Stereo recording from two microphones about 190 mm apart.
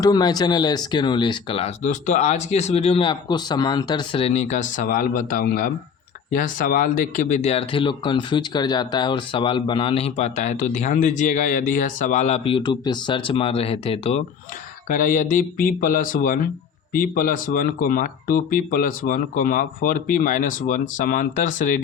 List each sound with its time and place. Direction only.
0.0 s speech: 20° left (ahead or behind)
14.8 s speech: 45° left (ahead or behind)